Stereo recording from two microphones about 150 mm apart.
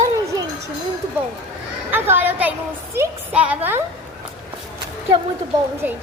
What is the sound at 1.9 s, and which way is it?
A woman's voice, 15° right (ahead or behind).